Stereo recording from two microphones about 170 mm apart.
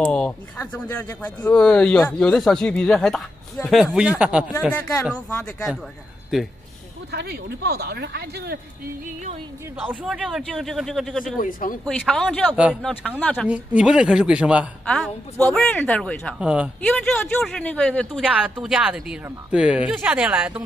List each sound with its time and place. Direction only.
0.0 s a sound: 5° left (ahead or behind)
1.2 s speech: 5° left (ahead or behind)
7.1 s speech: 75° right (ahead or behind)
9.0 s speech: 40° right (ahead or behind)
9.8 s speech: centre (ahead or behind)
11.3 s speech: 55° left (ahead or behind)
11.8 s speech: 5° left (ahead or behind)
13.5 s speech: 5° right (ahead or behind)
14.9 s speech: 5° left (ahead or behind)
16.3 s speech: 5° right (ahead or behind)
16.8 s speech: 5° left (ahead or behind)
18.3 s speech: 5° right (ahead or behind)